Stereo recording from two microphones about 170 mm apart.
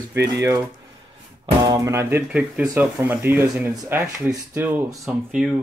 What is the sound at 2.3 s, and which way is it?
Speech, 5° right (ahead or behind).